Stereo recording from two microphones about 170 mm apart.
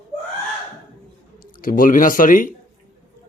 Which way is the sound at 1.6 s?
55° left (ahead or behind).